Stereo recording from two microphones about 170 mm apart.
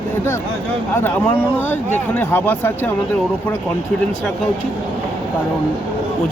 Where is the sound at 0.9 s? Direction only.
10° left (ahead or behind).